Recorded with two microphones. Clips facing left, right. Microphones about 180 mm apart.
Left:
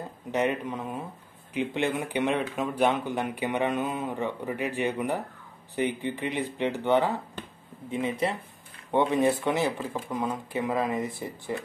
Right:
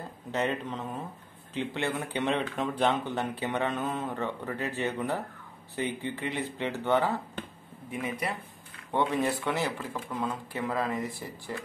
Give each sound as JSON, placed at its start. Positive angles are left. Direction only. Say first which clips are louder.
{"t": 0.3, "sound": "speech", "louder": "left 3 dB", "side_deg": 15}